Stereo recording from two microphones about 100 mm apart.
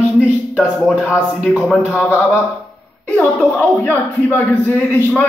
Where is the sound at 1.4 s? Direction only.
5° left (ahead or behind).